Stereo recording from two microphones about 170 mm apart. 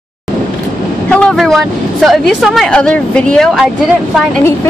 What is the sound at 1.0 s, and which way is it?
Speech, 5° left (ahead or behind).